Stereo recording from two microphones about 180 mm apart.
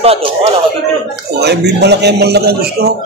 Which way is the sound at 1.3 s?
65° right (ahead or behind).